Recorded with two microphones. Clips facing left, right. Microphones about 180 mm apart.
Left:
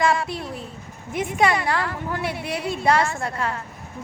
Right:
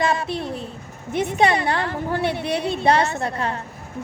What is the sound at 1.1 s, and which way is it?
A woman's voice, 25° right (ahead or behind).